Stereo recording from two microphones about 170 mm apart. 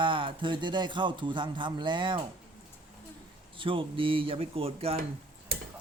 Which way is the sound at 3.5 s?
30° right (ahead or behind).